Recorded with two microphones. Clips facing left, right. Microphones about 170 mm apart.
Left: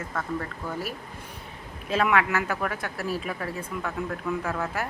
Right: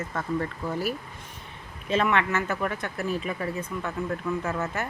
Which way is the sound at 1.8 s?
5° left (ahead or behind).